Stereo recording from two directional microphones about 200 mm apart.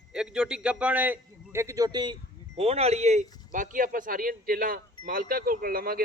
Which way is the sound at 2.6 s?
30° right (ahead or behind).